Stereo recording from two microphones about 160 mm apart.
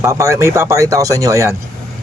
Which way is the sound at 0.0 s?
20° right (ahead or behind).